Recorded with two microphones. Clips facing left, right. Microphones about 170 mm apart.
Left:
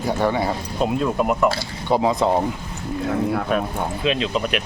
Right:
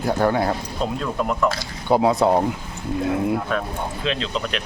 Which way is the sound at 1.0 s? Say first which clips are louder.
Left 4 dB; 15° left (ahead or behind).